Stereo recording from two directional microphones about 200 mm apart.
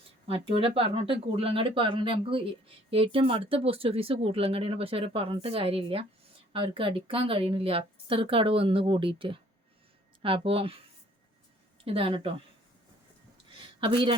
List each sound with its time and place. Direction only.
0.3 s speech: 25° right (ahead or behind)
11.9 s speech: 25° right (ahead or behind)
13.8 s speech: 25° right (ahead or behind)